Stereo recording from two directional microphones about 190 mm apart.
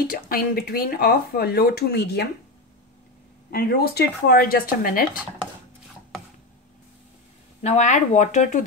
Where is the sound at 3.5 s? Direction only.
55° left (ahead or behind).